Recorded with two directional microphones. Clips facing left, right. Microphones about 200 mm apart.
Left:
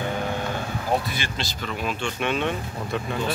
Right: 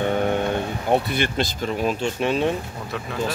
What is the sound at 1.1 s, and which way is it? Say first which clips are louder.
Speech: right 8 dB; 55° right (ahead or behind).